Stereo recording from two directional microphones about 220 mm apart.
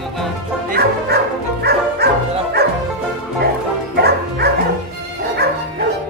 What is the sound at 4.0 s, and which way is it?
Music, 45° right (ahead or behind).